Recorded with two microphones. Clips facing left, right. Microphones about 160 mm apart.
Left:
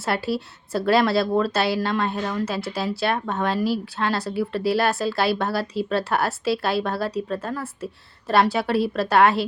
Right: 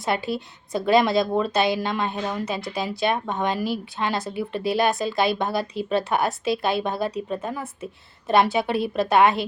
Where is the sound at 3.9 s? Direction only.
15° right (ahead or behind).